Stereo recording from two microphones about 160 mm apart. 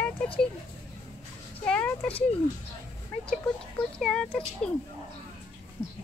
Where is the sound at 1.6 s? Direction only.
10° left (ahead or behind).